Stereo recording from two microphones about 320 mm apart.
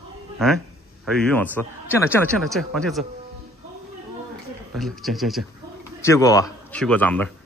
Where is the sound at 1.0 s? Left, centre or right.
Centre.